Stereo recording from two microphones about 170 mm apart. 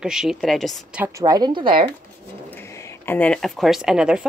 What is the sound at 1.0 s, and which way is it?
Speech, 20° right (ahead or behind).